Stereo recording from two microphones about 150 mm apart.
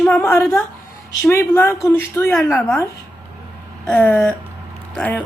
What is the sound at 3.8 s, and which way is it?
A woman's voice, 15° left (ahead or behind).